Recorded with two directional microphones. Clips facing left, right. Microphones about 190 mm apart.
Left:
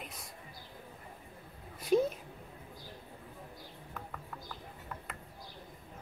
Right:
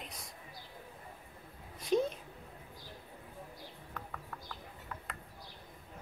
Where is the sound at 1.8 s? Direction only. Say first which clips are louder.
Left 3 dB; 5° left (ahead or behind).